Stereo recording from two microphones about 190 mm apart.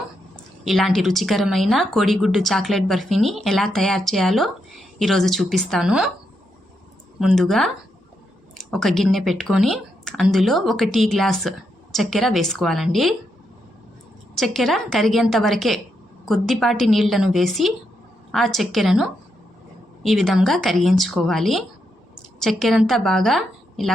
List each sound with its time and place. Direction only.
0.6 s a woman's voice: centre (ahead or behind)
7.2 s a woman's voice: centre (ahead or behind)
14.3 s a woman's voice: centre (ahead or behind)